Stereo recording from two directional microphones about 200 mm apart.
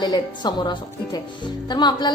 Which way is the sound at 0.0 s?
20° left (ahead or behind).